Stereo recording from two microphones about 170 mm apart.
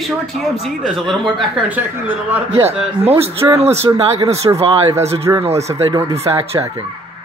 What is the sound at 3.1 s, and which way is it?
Speech, 15° right (ahead or behind).